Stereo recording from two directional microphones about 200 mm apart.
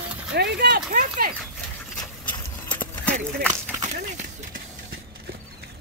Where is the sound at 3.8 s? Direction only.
40° right (ahead or behind).